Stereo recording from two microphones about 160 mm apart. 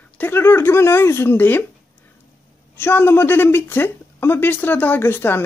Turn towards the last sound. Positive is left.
turn(degrees=15)  # may be behind; listen again after turning